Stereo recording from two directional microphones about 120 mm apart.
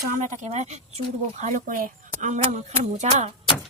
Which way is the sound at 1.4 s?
90° right.